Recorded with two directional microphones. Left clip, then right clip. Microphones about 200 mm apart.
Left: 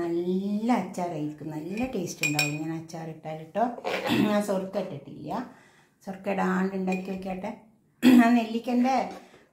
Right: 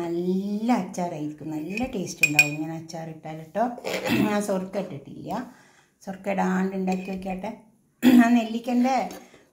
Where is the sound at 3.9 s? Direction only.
35° right (ahead or behind).